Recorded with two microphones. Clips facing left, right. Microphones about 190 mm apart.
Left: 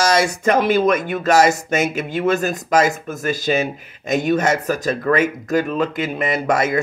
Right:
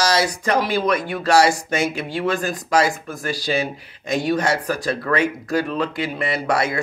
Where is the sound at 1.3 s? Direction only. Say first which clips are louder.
Left 1 dB; 20° left (ahead or behind).